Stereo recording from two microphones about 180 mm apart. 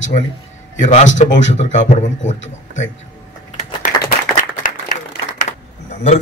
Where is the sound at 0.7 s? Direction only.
45° left (ahead or behind).